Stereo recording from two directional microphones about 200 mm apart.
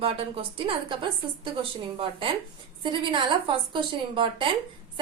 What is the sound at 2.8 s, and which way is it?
A woman's voice, 25° right (ahead or behind).